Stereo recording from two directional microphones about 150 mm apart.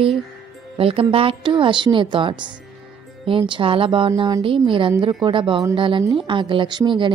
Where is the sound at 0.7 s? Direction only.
40° right (ahead or behind).